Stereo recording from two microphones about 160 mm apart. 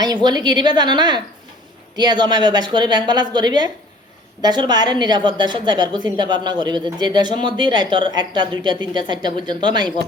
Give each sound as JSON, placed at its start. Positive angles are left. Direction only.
{"t": 0.0, "sound": "a woman's voice", "side_deg": -25}